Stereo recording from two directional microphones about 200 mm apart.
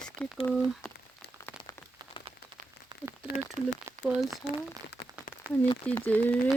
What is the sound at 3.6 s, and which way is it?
Speech, 40° right (ahead or behind).